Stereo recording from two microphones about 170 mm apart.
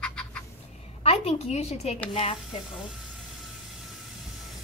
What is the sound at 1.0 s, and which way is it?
A woman's voice, 40° left (ahead or behind).